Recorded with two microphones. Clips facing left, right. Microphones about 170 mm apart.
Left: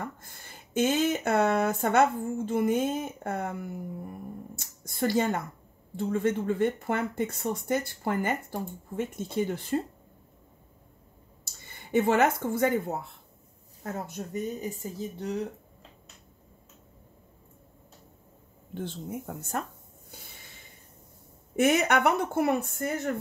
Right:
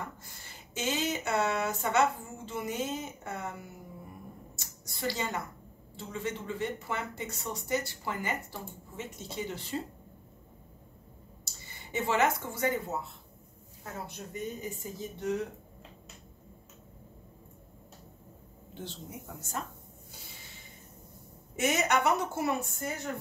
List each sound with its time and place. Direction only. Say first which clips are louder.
0.0 s speech: left 4 dB; 55° left (ahead or behind)
11.6 s speech: left 9 dB; 55° left (ahead or behind); by 15.2 s 35° left (ahead or behind)
18.8 s a woman's voice: left 8 dB; 55° left (ahead or behind)
21.5 s a woman's voice: left 5 dB; 55° left (ahead or behind)